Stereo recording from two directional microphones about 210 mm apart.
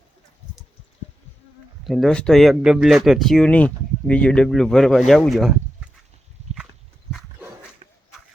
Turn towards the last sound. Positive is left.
turn(degrees=-30)  # may be behind; listen again after turning